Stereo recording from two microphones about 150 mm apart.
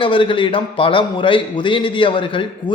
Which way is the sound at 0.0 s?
35° left (ahead or behind).